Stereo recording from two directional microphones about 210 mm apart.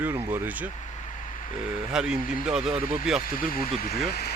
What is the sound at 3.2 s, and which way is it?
Speech, 40° left (ahead or behind).